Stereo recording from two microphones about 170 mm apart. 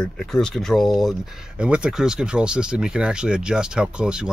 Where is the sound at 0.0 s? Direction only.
5° left (ahead or behind).